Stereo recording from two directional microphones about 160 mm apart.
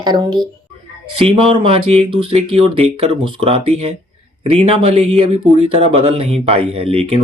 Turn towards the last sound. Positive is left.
turn(degrees=-35)  # may be behind; listen again after turning